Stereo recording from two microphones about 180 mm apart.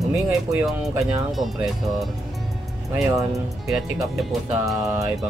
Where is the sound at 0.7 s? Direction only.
Centre (ahead or behind).